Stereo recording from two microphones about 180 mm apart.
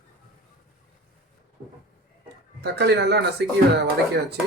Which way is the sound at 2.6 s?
70° right (ahead or behind).